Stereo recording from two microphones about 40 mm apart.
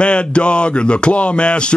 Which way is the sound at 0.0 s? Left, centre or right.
Left.